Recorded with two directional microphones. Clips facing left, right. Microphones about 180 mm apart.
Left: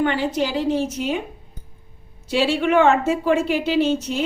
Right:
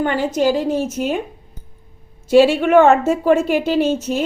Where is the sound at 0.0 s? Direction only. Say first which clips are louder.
Right 4 dB; 45° right (ahead or behind).